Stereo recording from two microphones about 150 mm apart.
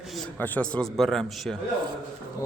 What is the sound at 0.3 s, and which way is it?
A man's voice, 10° left (ahead or behind).